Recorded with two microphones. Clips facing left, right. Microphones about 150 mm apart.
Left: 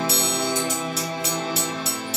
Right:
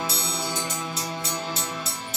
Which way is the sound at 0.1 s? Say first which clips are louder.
Left 6 dB; 60° left (ahead or behind).